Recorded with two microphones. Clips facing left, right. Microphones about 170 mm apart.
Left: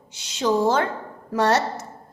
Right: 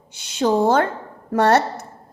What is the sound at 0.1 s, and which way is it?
A woman's voice, 55° right (ahead or behind).